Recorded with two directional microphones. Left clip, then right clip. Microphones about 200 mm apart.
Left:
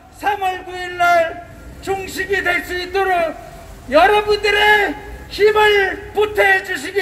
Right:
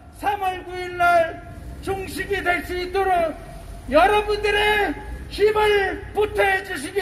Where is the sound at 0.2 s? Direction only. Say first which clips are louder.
Left 4 dB; 20° left (ahead or behind).